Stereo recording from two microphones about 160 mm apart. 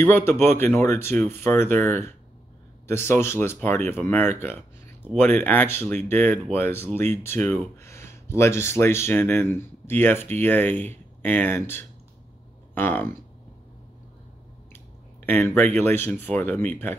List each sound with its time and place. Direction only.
0.0 s speech: 15° left (ahead or behind)
5.4 s speech: 10° left (ahead or behind)
15.2 s speech: 10° left (ahead or behind)